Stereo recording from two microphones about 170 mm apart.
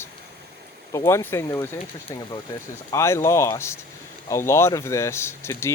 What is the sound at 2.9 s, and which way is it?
Speech, 15° left (ahead or behind).